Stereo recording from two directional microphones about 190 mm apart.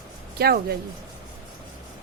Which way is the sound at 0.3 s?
55° right (ahead or behind).